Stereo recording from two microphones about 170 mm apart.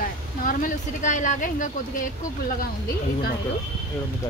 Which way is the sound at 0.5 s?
50° left (ahead or behind).